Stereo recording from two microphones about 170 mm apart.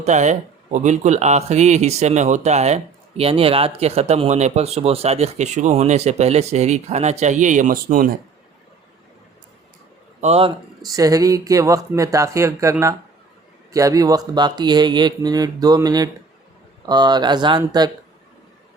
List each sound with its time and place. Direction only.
0.0 s speech: 40° right (ahead or behind)
10.2 s a man's voice: 40° right (ahead or behind)
10.8 s speech: 20° right (ahead or behind)